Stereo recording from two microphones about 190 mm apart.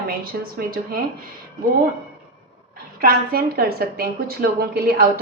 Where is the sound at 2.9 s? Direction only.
50° right (ahead or behind).